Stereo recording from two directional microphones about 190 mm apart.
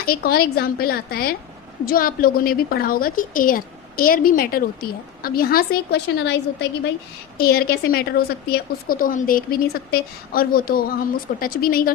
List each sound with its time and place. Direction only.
0.0 s a woman's voice: 50° left (ahead or behind)